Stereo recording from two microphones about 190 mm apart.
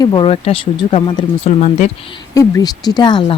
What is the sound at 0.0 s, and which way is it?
A woman's voice, 25° left (ahead or behind).